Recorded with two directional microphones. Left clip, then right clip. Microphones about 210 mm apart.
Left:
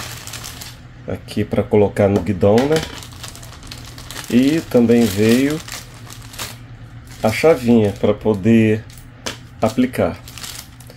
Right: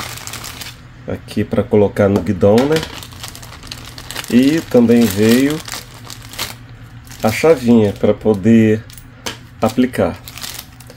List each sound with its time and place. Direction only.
1.0 s speech: 10° right (ahead or behind)
7.2 s speech: 10° right (ahead or behind)